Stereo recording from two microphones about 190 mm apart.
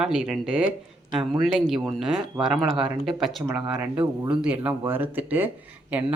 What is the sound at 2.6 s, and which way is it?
Speech, 25° right (ahead or behind).